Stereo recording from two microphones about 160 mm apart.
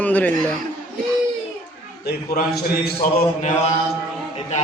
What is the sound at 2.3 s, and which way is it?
Speech, 75° left (ahead or behind).